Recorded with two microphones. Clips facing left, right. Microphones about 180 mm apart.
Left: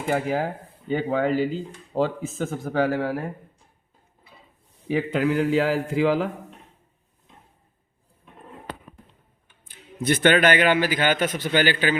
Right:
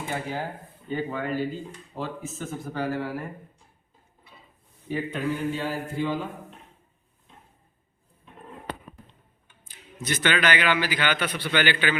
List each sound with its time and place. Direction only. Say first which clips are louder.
0.4 s speech: left 6 dB; 75° left (ahead or behind)
4.9 s a man's voice: left 6 dB; 90° left
9.6 s a man's voice: left 8 dB; 55° left (ahead or behind); by 11.9 s 40° left (ahead or behind)